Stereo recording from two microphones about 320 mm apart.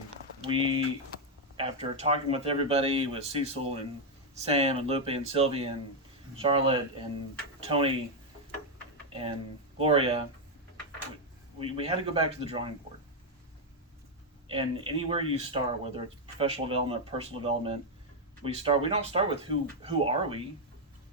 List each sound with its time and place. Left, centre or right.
0.4 s speech: centre
9.7 s speech: centre
11.6 s speech: centre
14.4 s speech: centre